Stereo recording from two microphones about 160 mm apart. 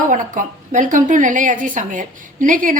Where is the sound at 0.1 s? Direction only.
55° right (ahead or behind).